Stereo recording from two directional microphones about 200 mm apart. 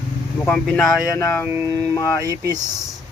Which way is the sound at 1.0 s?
15° left (ahead or behind).